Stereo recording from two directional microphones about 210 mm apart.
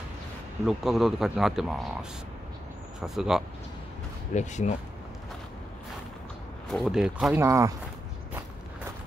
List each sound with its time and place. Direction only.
0.7 s speech: centre (ahead or behind)
4.3 s speech: 35° left (ahead or behind)
6.7 s speech: centre (ahead or behind)
7.4 s speech: 15° right (ahead or behind)